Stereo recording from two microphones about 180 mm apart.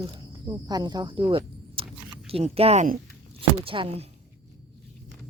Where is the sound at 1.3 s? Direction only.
30° right (ahead or behind).